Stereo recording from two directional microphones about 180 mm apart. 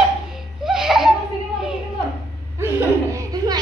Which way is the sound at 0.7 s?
Centre (ahead or behind).